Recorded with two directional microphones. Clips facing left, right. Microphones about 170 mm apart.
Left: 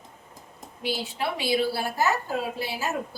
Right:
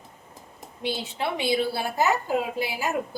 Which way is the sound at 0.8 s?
20° right (ahead or behind).